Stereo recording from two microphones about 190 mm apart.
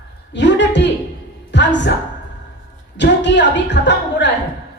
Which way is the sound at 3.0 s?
65° left (ahead or behind).